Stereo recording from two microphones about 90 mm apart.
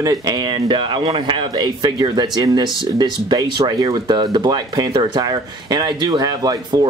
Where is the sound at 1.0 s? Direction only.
65° right (ahead or behind).